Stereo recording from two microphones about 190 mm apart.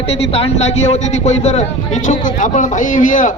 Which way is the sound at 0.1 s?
35° left (ahead or behind).